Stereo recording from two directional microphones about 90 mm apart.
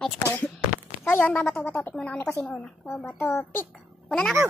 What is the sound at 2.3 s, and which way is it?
A woman's voice, 25° left (ahead or behind).